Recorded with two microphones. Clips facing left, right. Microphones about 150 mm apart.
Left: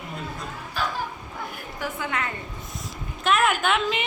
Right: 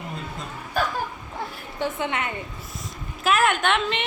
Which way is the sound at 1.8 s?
25° right (ahead or behind).